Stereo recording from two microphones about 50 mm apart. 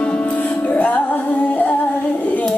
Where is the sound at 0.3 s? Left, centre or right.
Left.